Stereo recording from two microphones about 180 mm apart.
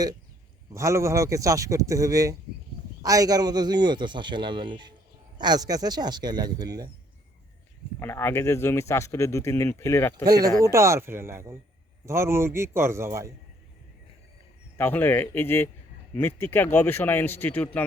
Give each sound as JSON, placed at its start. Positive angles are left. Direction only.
{"t": 0.7, "sound": "a man's voice", "side_deg": -15}
{"t": 7.9, "sound": "speech", "side_deg": 15}
{"t": 10.2, "sound": "a man's voice", "side_deg": -20}
{"t": 14.8, "sound": "speech", "side_deg": 10}